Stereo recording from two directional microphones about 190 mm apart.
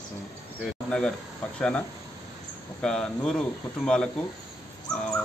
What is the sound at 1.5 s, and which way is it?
Speech, 5° left (ahead or behind).